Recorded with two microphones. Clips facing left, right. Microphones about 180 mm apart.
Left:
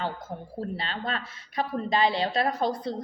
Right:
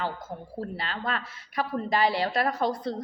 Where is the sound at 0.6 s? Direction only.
25° left (ahead or behind).